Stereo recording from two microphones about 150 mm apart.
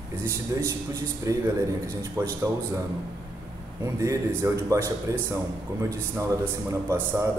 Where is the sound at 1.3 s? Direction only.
20° right (ahead or behind).